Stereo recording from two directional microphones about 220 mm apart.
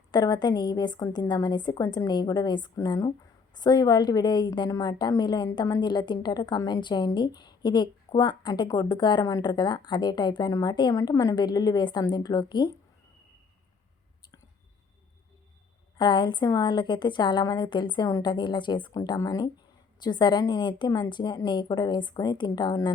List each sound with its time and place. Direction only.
0.1 s a woman's voice: 20° left (ahead or behind)
16.0 s a woman's voice: 20° left (ahead or behind)